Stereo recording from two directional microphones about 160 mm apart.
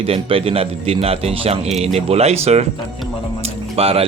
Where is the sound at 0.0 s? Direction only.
35° right (ahead or behind).